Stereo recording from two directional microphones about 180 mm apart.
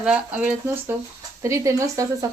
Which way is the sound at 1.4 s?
15° right (ahead or behind).